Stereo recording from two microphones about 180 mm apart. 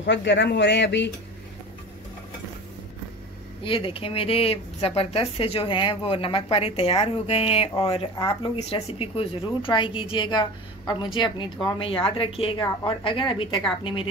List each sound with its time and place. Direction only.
0.0 s speech: 80° left
3.6 s speech: 30° left (ahead or behind)